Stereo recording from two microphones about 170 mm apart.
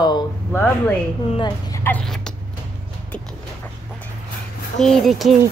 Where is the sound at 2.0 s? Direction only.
5° left (ahead or behind).